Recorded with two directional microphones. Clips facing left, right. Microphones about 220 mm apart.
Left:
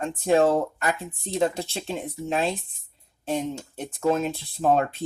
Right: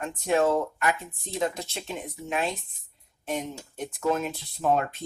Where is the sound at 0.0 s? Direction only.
30° left (ahead or behind).